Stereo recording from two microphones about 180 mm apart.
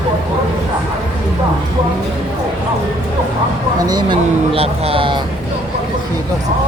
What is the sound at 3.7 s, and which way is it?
Speech, 20° right (ahead or behind).